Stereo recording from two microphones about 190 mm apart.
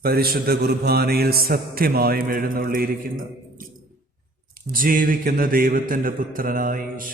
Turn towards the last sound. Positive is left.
turn(degrees=-45)  # may be behind; listen again after turning